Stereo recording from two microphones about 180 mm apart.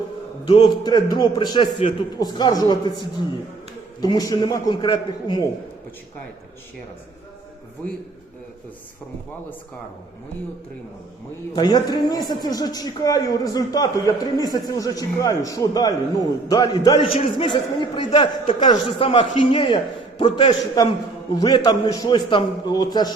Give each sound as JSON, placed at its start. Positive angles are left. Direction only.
{"t": 0.4, "sound": "a man's voice", "side_deg": 25}
{"t": 11.5, "sound": "a man's voice", "side_deg": 25}